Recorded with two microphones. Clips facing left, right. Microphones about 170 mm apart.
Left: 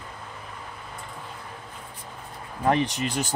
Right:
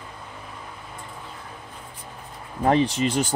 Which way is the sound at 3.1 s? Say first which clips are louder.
Right 5 dB; 30° right (ahead or behind).